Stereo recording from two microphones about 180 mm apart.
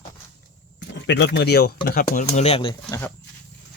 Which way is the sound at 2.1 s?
40° left (ahead or behind).